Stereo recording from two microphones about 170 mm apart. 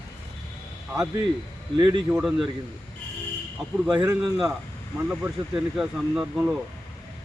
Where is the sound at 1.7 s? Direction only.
30° right (ahead or behind).